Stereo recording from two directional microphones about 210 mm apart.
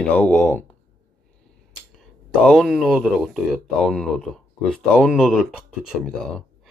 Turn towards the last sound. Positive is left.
turn(degrees=0)  # may be behind; listen again after turning